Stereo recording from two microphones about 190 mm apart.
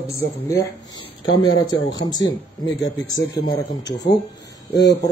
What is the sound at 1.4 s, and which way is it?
Speech, 20° left (ahead or behind).